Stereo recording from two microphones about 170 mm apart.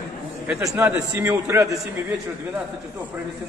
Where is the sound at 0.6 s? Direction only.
15° right (ahead or behind).